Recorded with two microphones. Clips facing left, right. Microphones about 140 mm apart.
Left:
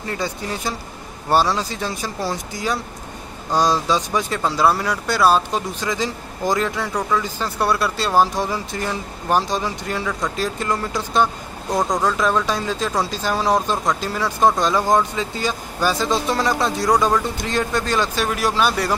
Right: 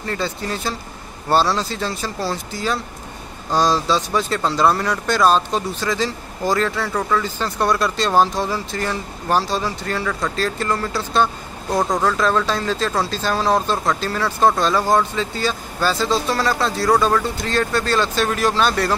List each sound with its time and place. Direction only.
0.0 s speech: 15° left (ahead or behind)
11.7 s speech: 5° right (ahead or behind)
12.0 s speech: 10° left (ahead or behind)